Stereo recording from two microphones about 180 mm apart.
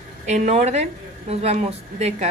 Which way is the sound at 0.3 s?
40° right (ahead or behind).